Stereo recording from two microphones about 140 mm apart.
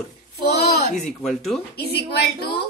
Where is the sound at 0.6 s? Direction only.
90° left.